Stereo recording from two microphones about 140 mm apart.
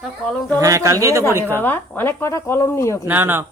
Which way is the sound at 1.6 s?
15° left (ahead or behind).